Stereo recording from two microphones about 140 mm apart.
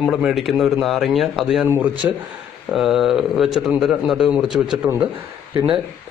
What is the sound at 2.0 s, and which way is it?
Speech, 20° right (ahead or behind).